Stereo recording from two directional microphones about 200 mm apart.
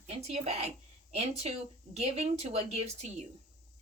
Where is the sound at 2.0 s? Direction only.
35° right (ahead or behind).